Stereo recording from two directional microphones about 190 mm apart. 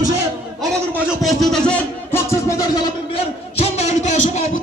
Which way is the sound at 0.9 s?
5° left (ahead or behind).